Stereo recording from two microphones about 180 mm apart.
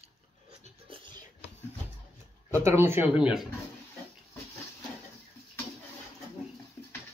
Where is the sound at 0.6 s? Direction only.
30° right (ahead or behind).